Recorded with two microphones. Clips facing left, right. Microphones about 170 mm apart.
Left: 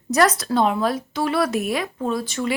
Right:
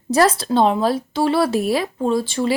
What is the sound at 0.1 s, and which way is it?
Speech, 30° right (ahead or behind).